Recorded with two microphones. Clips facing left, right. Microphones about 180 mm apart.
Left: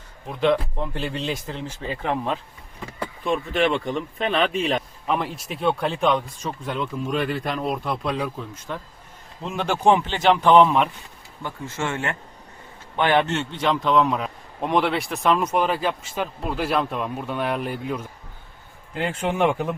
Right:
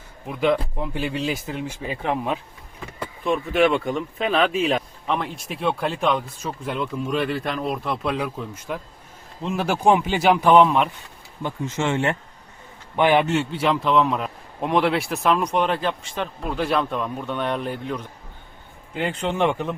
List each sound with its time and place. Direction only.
0.3 s speech: 10° right (ahead or behind)
11.4 s speech: 20° right (ahead or behind); by 19.7 s 10° left (ahead or behind)